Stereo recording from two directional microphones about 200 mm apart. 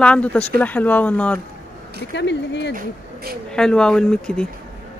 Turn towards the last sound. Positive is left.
turn(degrees=5)  # may be behind; listen again after turning